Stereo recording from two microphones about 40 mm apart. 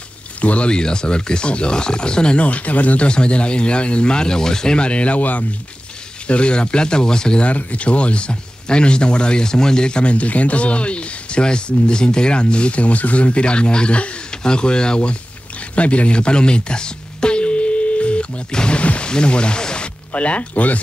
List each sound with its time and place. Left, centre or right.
0.4 s speech: left
0.7 s speech: left
2.4 s speech: left
3.1 s speech: left
6.2 s speech: left
7.4 s speech: left
15.7 s music: left
18.5 s speech: centre
18.8 s a sound: left
20.1 s speech: left